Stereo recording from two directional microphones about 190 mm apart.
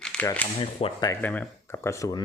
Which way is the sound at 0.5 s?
30° left (ahead or behind).